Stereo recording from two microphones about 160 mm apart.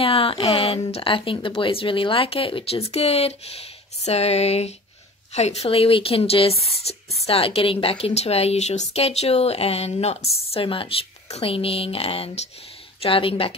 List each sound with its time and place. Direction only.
0.0 s a woman's voice: 35° left (ahead or behind)